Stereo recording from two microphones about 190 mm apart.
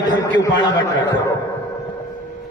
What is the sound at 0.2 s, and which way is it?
Speech, 20° left (ahead or behind).